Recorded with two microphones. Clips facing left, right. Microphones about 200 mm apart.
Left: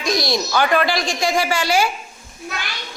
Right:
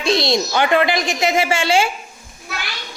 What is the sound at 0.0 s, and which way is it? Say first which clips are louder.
Speech: right 3 dB; 25° right (ahead or behind).